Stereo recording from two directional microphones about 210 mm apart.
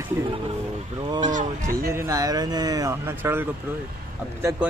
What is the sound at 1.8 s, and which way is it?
Speech, 15° right (ahead or behind).